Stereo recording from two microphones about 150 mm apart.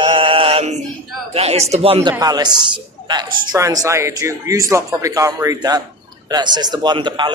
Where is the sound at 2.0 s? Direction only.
25° right (ahead or behind).